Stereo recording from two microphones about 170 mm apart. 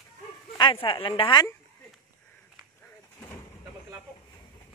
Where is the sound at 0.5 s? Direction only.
30° left (ahead or behind).